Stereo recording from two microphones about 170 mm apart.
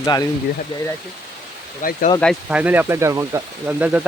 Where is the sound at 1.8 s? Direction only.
55° left (ahead or behind).